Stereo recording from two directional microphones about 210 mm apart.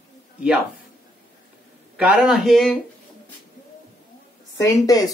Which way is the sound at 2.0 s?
5° right (ahead or behind).